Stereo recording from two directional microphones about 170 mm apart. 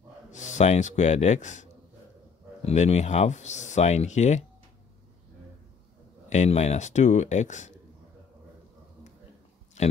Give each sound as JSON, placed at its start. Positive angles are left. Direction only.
{"t": 0.3, "sound": "speech", "side_deg": 45}
{"t": 6.2, "sound": "speech", "side_deg": 45}
{"t": 9.8, "sound": "speech", "side_deg": 40}